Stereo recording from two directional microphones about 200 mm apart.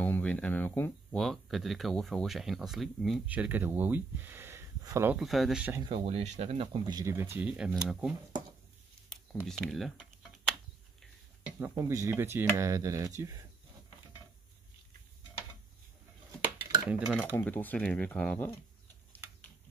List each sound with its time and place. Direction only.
0.0 s speech: 5° left (ahead or behind); by 5.2 s 15° right (ahead or behind)
5.2 s speech: centre (ahead or behind)
5.8 s speech: 25° right (ahead or behind); by 8.1 s 5° right (ahead or behind)
9.1 s speech: centre (ahead or behind)
11.6 s speech: 15° right (ahead or behind)
16.8 s speech: 5° right (ahead or behind)
17.4 s speech: 10° left (ahead or behind)